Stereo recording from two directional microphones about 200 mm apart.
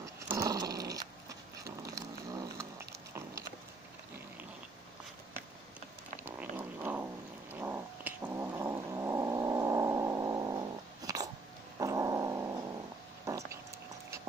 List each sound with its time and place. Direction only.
0.0 s dog: 15° right (ahead or behind)
2.0 s a sound: 15° right (ahead or behind)
6.2 s purr: 10° right (ahead or behind)
7.5 s cat: 10° right (ahead or behind)
11.8 s dog: 15° right (ahead or behind)
13.2 s a sound: 15° right (ahead or behind)